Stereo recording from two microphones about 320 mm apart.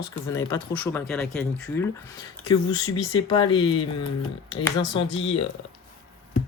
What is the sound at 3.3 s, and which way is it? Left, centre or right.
Speech, centre.